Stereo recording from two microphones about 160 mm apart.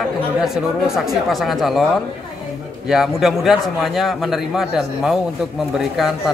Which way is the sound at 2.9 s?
Centre (ahead or behind).